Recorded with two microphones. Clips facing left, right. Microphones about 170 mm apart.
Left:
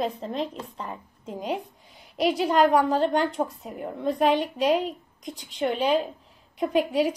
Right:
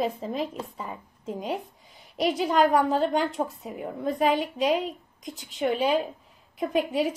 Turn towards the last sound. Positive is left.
turn(degrees=0)  # may be behind; listen again after turning